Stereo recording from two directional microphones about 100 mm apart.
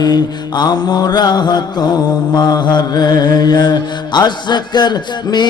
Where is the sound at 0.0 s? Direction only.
45° left (ahead or behind).